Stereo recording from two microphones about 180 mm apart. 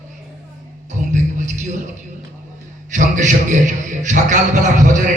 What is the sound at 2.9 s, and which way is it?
A man's voice, 45° right (ahead or behind).